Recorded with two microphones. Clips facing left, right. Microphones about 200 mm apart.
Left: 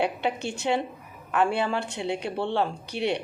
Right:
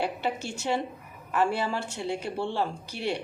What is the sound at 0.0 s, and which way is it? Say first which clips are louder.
A woman's voice: left 3 dB; 65° left (ahead or behind).